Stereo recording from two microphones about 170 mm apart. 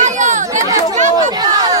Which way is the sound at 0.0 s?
45° right (ahead or behind).